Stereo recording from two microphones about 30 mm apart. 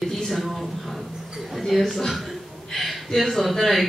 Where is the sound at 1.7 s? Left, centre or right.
Centre.